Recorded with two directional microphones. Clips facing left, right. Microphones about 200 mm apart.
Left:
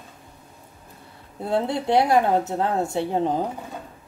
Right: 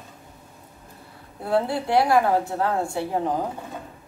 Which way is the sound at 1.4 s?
20° left (ahead or behind).